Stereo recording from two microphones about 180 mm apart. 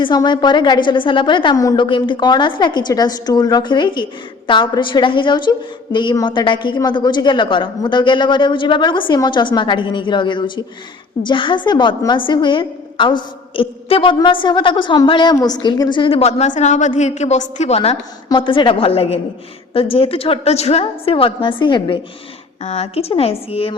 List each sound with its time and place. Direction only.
0.0 s a woman's voice: 25° left (ahead or behind)